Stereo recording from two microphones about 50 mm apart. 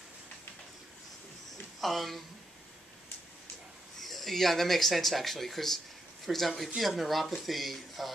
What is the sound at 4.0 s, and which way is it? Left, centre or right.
Speech, centre.